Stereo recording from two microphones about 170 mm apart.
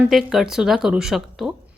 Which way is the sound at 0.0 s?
Centre (ahead or behind).